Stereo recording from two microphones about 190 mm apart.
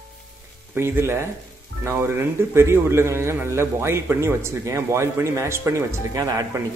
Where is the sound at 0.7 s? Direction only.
10° right (ahead or behind).